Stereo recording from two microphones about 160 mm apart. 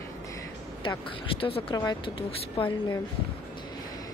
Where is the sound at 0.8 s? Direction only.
30° left (ahead or behind).